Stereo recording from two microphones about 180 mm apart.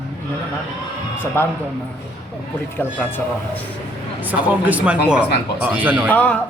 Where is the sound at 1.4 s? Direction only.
15° left (ahead or behind).